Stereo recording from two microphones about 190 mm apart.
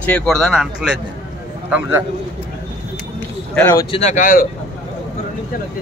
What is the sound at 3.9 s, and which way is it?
Speech, 40° left (ahead or behind).